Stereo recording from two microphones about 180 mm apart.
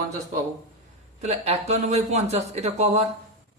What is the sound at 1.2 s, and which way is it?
Speech, 35° right (ahead or behind).